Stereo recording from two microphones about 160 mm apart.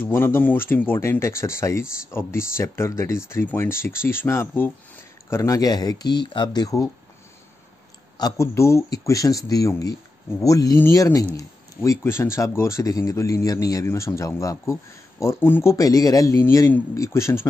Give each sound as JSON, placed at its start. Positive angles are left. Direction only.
{"t": 0.0, "sound": "speech", "side_deg": 15}
{"t": 8.2, "sound": "speech", "side_deg": 20}